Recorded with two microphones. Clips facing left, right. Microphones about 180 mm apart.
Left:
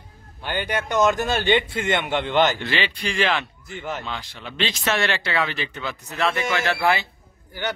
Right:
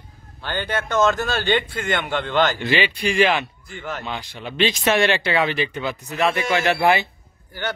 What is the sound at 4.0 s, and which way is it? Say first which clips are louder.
Speech: right 3 dB; 15° right (ahead or behind).